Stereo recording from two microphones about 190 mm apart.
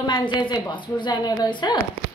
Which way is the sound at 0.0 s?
25° left (ahead or behind).